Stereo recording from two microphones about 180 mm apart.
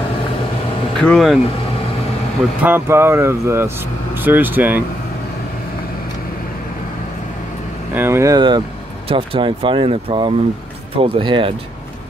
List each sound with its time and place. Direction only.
0.9 s speech: centre (ahead or behind)
2.6 s speech: 10° right (ahead or behind)
7.9 s speech: 15° right (ahead or behind)